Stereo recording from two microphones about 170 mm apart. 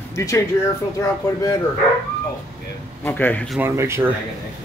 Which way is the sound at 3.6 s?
15° right (ahead or behind).